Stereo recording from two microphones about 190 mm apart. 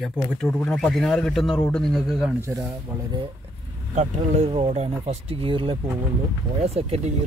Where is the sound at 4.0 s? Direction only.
35° right (ahead or behind).